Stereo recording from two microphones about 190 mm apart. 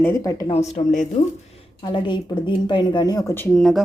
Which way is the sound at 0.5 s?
35° left (ahead or behind).